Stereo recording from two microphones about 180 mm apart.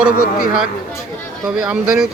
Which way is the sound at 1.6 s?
5° right (ahead or behind).